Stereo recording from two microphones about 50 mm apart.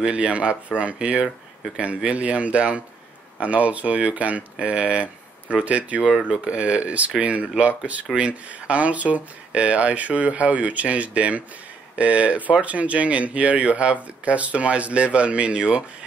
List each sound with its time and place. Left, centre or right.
0.0 s speech: right